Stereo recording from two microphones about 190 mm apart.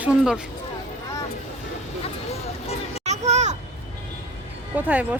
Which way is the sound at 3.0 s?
35° right (ahead or behind).